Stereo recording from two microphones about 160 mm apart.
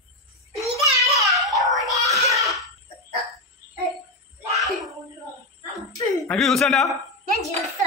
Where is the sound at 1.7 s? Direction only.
Centre (ahead or behind).